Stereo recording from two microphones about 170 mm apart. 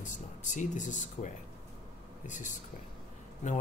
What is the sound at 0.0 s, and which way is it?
Speech, 50° left (ahead or behind).